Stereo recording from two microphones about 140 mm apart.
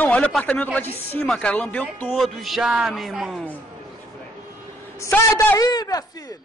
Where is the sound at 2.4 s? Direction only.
5° right (ahead or behind).